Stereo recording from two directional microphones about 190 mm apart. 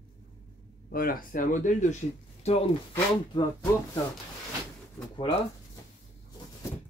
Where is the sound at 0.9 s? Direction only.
50° left (ahead or behind); by 2.7 s 35° left (ahead or behind).